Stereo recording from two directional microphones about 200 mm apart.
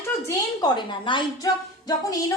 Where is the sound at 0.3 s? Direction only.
20° left (ahead or behind).